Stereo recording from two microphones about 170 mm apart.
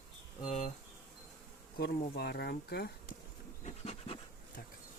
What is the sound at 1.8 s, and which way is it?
Speech, 70° left (ahead or behind).